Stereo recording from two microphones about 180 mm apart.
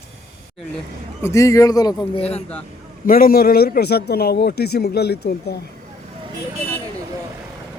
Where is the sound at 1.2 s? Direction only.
15° left (ahead or behind); by 2.4 s 35° left (ahead or behind).